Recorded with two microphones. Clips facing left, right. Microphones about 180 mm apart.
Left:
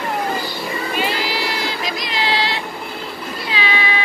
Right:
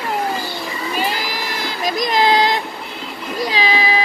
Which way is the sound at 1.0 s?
45° right (ahead or behind).